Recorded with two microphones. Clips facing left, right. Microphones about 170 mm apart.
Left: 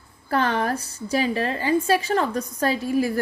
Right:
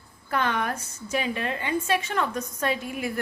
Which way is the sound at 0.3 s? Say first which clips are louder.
Left 4 dB; 35° left (ahead or behind).